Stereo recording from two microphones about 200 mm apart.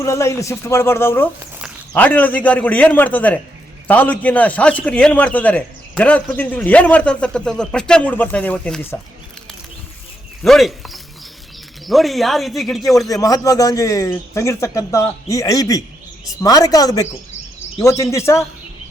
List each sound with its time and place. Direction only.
0.0 s speech: 15° left (ahead or behind)
10.4 s speech: centre (ahead or behind)
13.1 s speech: 20° left (ahead or behind)